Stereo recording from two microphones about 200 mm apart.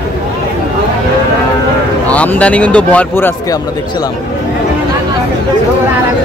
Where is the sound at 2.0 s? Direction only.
5° left (ahead or behind).